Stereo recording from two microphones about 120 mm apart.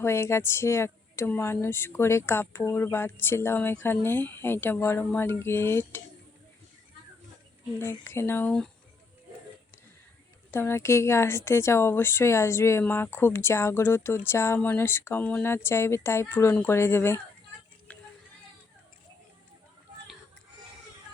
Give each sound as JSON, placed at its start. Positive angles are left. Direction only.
{"t": 0.0, "sound": "a woman's voice", "side_deg": 20}
{"t": 7.8, "sound": "a woman's voice", "side_deg": 20}
{"t": 8.4, "sound": "speech", "side_deg": 5}
{"t": 10.5, "sound": "a woman's voice", "side_deg": 20}